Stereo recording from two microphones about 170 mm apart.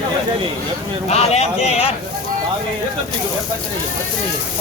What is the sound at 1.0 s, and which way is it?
Speech, 40° left (ahead or behind).